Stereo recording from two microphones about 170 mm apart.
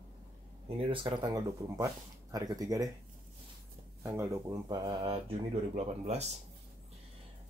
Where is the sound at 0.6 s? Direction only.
30° right (ahead or behind).